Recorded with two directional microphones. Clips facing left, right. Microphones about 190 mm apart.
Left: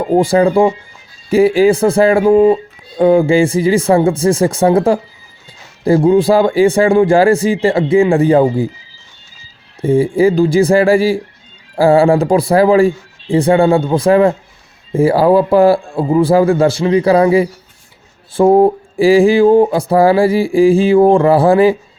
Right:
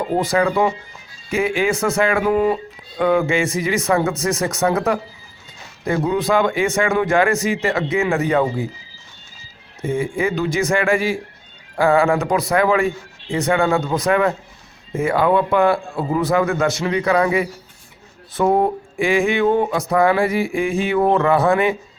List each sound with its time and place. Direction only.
0.1 s speech: 30° left (ahead or behind)
9.8 s speech: 35° left (ahead or behind)